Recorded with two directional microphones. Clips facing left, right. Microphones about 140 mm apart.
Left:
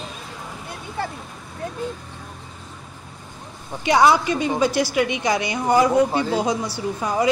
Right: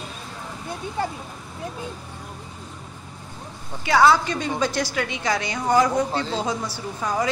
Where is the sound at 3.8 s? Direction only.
15° left (ahead or behind).